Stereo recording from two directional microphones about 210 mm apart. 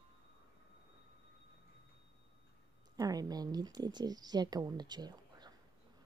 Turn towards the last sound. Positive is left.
turn(degrees=-20)  # may be behind; listen again after turning